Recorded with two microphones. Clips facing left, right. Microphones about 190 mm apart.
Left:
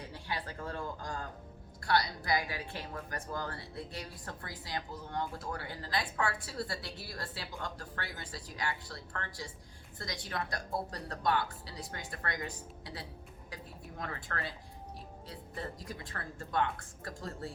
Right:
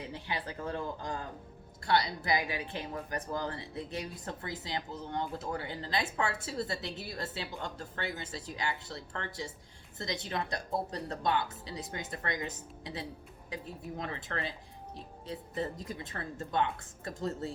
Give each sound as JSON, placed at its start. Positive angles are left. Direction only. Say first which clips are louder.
{"t": 0.0, "sound": "speech", "louder": "right 2 dB", "side_deg": -20}